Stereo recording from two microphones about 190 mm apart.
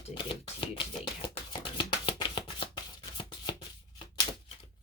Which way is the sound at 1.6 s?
25° left (ahead or behind).